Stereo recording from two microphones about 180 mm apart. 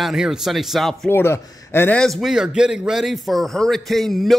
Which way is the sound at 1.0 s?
15° left (ahead or behind).